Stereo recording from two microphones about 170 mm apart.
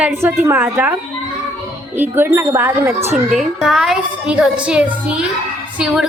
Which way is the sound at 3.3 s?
Centre (ahead or behind).